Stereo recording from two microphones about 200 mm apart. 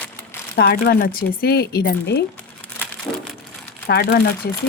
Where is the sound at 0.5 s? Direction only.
50° left (ahead or behind).